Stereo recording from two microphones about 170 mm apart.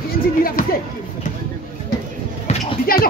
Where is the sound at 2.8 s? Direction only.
60° left (ahead or behind).